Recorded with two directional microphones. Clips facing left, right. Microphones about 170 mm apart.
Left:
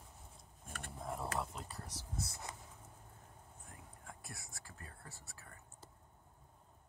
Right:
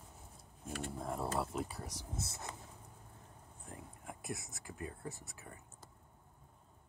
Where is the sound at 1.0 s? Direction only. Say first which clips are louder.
Right 2 dB; centre (ahead or behind).